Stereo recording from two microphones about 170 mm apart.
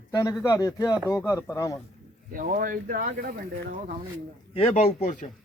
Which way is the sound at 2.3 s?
55° right (ahead or behind).